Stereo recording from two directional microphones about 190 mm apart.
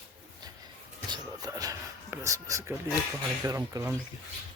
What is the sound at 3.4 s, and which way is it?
Speech, 15° right (ahead or behind).